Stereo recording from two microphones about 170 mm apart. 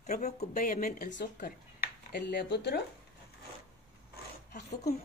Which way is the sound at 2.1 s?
75° left (ahead or behind).